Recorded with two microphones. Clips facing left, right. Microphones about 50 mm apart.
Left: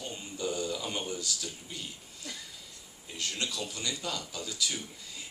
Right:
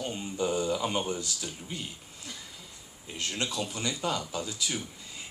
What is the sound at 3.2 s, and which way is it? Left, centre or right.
Speech, right.